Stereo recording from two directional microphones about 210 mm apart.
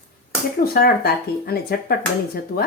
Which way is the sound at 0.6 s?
45° left (ahead or behind).